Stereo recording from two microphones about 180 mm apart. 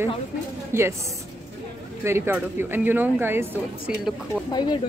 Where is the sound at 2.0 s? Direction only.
15° right (ahead or behind).